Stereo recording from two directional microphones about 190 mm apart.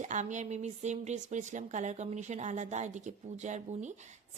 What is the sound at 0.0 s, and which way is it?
A woman's voice, 40° right (ahead or behind).